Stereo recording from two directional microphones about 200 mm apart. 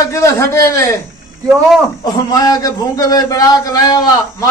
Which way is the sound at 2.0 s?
20° left (ahead or behind).